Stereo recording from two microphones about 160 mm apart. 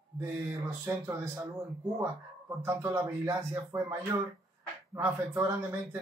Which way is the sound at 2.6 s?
10° right (ahead or behind).